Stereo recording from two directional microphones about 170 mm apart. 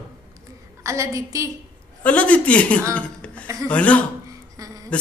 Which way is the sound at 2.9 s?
10° left (ahead or behind).